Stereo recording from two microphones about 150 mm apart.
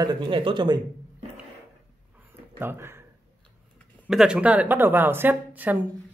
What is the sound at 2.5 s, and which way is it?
Speech, 15° right (ahead or behind).